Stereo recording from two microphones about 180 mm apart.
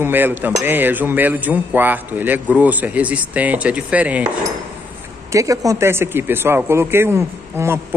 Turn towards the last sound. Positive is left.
turn(degrees=-15)  # may be behind; listen again after turning